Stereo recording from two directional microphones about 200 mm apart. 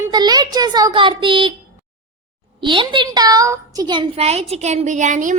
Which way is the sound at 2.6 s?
25° right (ahead or behind).